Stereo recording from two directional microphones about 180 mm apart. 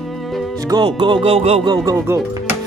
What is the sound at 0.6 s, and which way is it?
Music, 25° right (ahead or behind).